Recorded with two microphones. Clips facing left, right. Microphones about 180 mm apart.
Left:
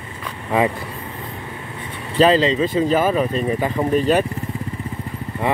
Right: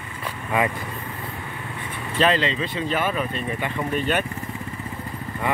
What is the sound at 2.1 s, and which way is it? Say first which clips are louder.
Speech: left 7 dB; 35° left (ahead or behind).